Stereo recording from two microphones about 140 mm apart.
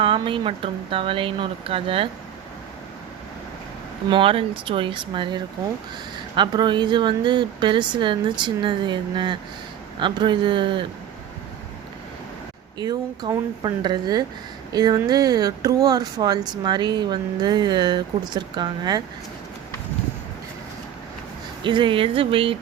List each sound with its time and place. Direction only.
0.0 s a woman's voice: 40° right (ahead or behind)
4.1 s a woman's voice: 40° right (ahead or behind)
12.8 s speech: 30° right (ahead or behind)
21.6 s a woman's voice: 35° right (ahead or behind)